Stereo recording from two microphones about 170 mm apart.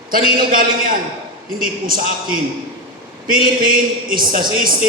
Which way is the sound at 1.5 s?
55° right (ahead or behind).